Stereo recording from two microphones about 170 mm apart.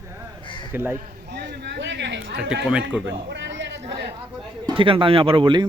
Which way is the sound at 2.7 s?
5° right (ahead or behind).